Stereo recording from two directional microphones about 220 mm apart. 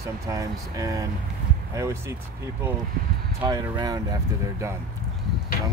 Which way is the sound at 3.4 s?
20° right (ahead or behind).